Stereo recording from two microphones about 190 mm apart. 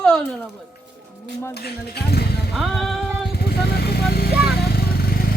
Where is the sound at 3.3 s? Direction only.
55° left (ahead or behind).